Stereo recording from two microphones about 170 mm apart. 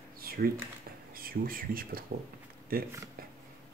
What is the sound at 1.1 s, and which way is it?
Speech, 60° right (ahead or behind).